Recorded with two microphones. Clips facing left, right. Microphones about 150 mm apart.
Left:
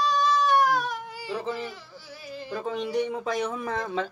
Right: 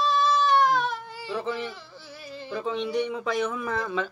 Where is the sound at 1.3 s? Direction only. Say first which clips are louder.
Right 1 dB; 40° left (ahead or behind).